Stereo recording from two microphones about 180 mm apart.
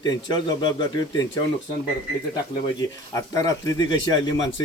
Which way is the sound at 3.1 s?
20° left (ahead or behind).